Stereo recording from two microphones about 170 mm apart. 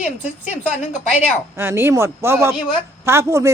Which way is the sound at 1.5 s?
15° right (ahead or behind).